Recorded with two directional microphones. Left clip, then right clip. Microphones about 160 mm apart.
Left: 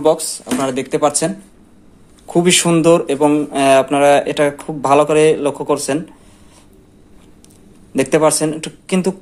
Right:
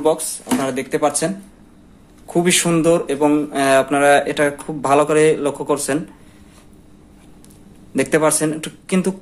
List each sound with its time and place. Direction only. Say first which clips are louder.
0.0 s speech: left 3 dB; 30° left (ahead or behind)
7.9 s speech: left 3 dB; 20° left (ahead or behind)